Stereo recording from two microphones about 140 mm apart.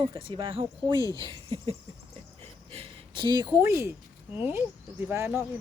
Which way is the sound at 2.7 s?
45° right (ahead or behind).